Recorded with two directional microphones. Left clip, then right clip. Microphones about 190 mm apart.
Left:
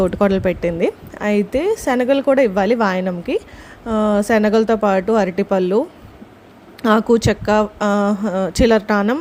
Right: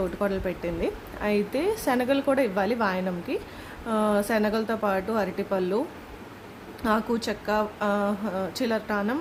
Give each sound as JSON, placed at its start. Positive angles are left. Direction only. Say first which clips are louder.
{"t": 0.0, "sound": "a woman's voice", "louder": "left 11 dB", "side_deg": 40}
{"t": 6.8, "sound": "a woman's voice", "louder": "left 11 dB", "side_deg": 40}